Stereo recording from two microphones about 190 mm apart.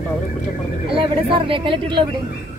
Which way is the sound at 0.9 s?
25° right (ahead or behind).